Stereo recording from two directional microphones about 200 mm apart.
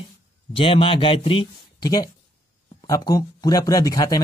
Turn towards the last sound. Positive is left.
turn(degrees=15)  # may be behind; listen again after turning